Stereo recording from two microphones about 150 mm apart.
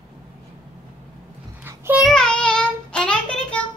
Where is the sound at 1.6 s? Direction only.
15° right (ahead or behind).